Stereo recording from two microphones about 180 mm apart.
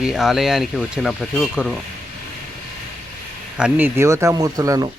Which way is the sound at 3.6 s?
5° right (ahead or behind).